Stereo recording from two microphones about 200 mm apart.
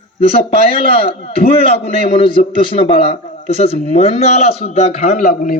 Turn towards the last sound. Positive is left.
turn(degrees=40)  # may be behind; listen again after turning